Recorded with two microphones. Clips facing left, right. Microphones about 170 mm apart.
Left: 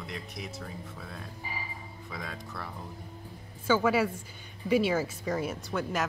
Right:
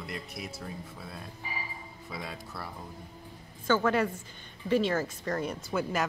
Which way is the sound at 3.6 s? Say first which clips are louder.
Left 1 dB; 10° left (ahead or behind).